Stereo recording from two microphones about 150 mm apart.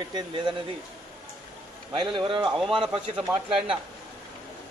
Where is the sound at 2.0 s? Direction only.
35° right (ahead or behind).